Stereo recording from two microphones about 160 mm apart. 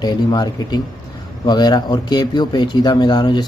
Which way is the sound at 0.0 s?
25° left (ahead or behind).